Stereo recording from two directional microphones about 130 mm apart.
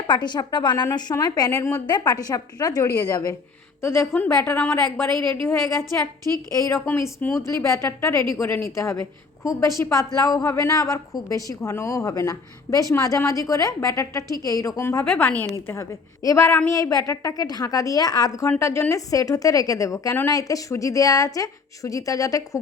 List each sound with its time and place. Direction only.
0.1 s a woman's voice: 35° left (ahead or behind); by 4.8 s 20° left (ahead or behind)
6.8 s a woman's voice: 15° left (ahead or behind)
15.0 s speech: 5° left (ahead or behind)
15.4 s a woman's voice: 20° left (ahead or behind)